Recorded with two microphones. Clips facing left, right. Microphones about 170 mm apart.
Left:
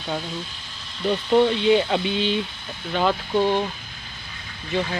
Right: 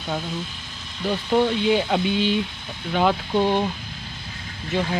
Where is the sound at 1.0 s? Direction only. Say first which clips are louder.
Left 2 dB; 10° right (ahead or behind).